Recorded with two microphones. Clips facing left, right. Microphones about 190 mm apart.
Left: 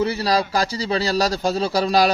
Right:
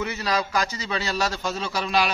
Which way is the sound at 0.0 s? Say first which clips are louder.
Left 6 dB; 35° left (ahead or behind).